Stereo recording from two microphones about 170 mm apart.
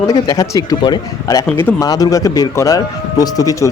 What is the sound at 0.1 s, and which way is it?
Speech, 20° left (ahead or behind).